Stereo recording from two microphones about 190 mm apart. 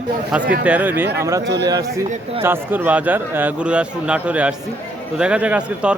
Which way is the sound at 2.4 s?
10° right (ahead or behind).